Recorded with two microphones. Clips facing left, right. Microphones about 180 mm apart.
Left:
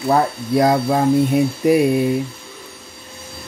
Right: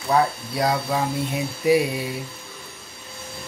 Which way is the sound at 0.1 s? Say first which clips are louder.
Left 4 dB; 50° left (ahead or behind).